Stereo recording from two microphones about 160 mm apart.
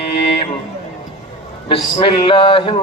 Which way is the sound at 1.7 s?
35° left (ahead or behind).